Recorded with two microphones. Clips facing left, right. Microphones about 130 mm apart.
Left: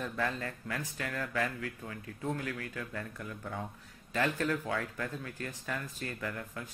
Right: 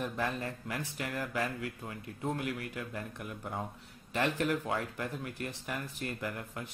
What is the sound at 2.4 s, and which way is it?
Speech, 15° right (ahead or behind).